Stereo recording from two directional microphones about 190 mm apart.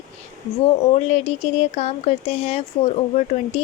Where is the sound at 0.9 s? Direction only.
35° left (ahead or behind).